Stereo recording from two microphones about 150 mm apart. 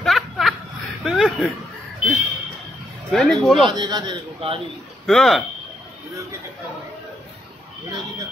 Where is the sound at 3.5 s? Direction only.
30° right (ahead or behind).